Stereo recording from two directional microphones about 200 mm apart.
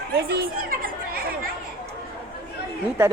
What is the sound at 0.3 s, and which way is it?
Chatter, 50° right (ahead or behind).